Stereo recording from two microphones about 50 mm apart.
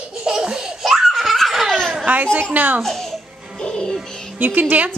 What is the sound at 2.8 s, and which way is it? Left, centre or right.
Babbling, centre.